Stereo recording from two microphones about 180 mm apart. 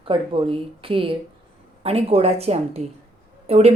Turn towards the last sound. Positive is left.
turn(degrees=-35)  # may be behind; listen again after turning